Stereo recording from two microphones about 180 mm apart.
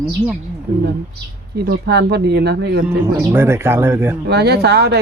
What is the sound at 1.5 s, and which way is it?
Speech, 60° right (ahead or behind).